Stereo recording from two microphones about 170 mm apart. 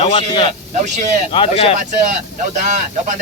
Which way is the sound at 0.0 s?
30° left (ahead or behind).